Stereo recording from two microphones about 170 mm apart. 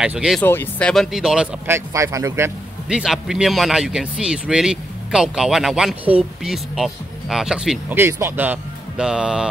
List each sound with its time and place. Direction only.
0.0 s speech: 5° right (ahead or behind)
0.4 s speech: 10° left (ahead or behind); by 1.8 s 5° right (ahead or behind)
2.0 s speech: 15° right (ahead or behind)
2.9 s speech: 5° right (ahead or behind)
7.9 s speech: 15° right (ahead or behind)